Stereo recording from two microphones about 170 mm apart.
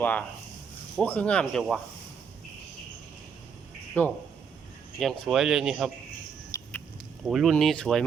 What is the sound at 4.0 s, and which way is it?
Speech, 10° left (ahead or behind).